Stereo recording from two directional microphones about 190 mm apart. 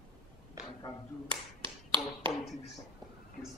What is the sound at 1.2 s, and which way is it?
Finger snapping, 25° right (ahead or behind).